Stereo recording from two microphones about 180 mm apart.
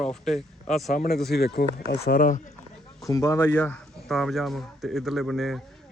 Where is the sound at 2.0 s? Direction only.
50° left (ahead or behind).